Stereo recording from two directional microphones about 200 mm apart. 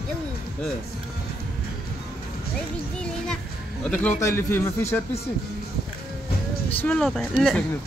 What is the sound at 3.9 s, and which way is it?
Speech, 10° left (ahead or behind).